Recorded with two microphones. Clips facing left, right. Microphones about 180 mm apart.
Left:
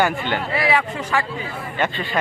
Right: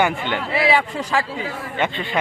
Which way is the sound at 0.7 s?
30° right (ahead or behind).